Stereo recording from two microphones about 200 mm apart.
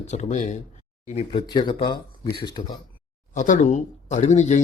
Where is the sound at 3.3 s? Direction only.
40° left (ahead or behind).